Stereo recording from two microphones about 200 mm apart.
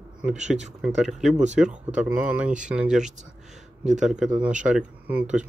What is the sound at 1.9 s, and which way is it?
Speech, 5° right (ahead or behind).